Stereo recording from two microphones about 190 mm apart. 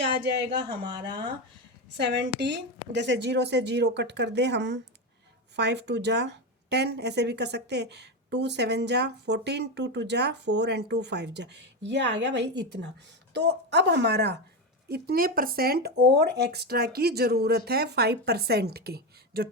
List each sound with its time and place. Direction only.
0.6 s speech: 25° right (ahead or behind)
1.9 s speech: 65° right (ahead or behind)